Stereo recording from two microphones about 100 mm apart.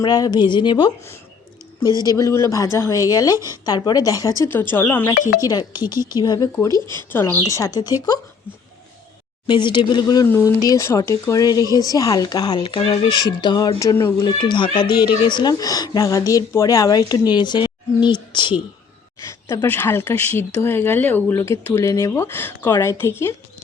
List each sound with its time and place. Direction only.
0.0 s a woman's voice: 40° left (ahead or behind)
4.4 s speech: 20° left (ahead or behind)
5.0 s a woman's voice: 40° left (ahead or behind)
6.9 s a woman's voice: 25° left (ahead or behind); by 7.9 s 40° left (ahead or behind)
9.5 s speech: 50° left (ahead or behind)
10.2 s a woman's voice: 30° left (ahead or behind); by 18.5 s 50° left (ahead or behind)
19.2 s speech: 30° left (ahead or behind)